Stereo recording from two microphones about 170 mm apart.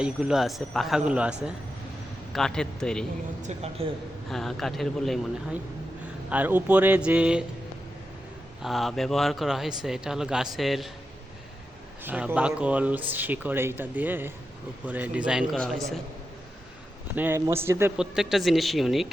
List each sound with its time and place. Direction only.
0.0 s speech: 5° right (ahead or behind)
3.4 s a woman's voice: 40° right (ahead or behind)
4.3 s speech: centre (ahead or behind)
6.3 s speech: 10° right (ahead or behind)
8.6 s speech: centre (ahead or behind)
12.0 s speech: 10° right (ahead or behind)
17.2 s speech: 15° right (ahead or behind)
17.9 s speech: 5° right (ahead or behind)